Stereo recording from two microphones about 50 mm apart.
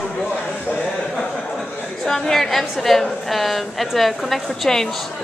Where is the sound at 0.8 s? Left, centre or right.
Centre.